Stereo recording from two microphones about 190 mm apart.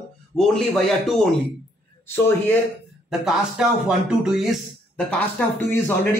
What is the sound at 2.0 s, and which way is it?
Speech, 10° left (ahead or behind).